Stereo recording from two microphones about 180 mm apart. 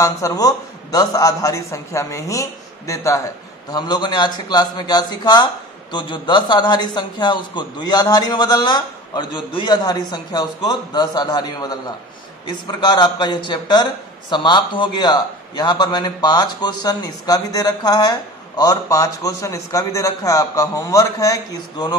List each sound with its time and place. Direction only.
0.0 s a man's voice: 20° left (ahead or behind)